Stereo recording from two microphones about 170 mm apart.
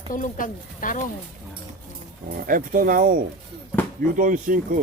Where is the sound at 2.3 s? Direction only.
55° right (ahead or behind).